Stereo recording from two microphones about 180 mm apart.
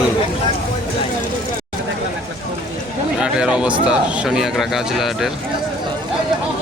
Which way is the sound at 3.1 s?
5° right (ahead or behind).